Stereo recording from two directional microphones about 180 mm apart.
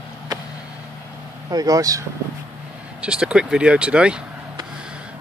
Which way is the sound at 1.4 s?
20° right (ahead or behind).